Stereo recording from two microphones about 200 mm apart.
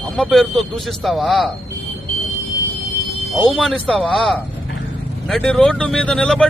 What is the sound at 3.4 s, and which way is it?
Speech, centre (ahead or behind).